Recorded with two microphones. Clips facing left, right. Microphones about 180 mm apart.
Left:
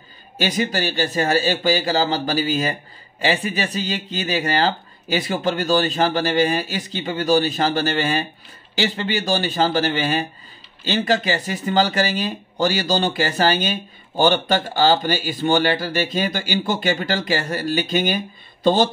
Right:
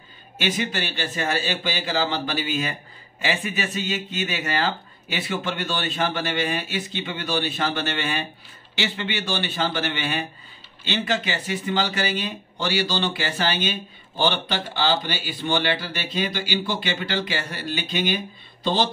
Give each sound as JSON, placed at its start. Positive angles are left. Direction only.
{"t": 0.4, "sound": "speech", "side_deg": 40}